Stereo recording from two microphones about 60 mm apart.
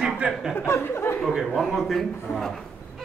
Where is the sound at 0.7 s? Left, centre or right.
Left.